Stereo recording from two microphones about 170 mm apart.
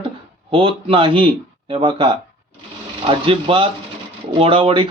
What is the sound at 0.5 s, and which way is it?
Speech, 30° right (ahead or behind).